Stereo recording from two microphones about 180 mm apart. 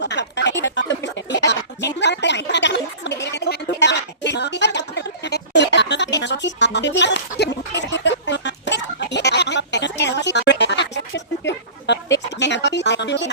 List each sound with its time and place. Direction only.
0.0 s speech: 75° left (ahead or behind)
0.6 s a sound: 80° left
12.1 s music: 80° left